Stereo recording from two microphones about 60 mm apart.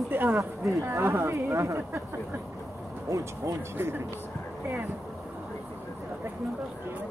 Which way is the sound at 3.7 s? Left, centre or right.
Right.